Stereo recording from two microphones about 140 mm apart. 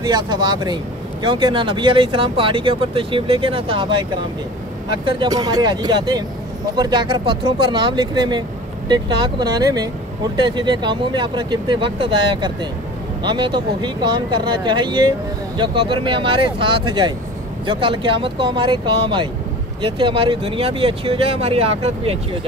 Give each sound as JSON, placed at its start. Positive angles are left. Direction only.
{"t": 0.0, "sound": "speech", "side_deg": -30}
{"t": 5.0, "sound": "speech", "side_deg": -30}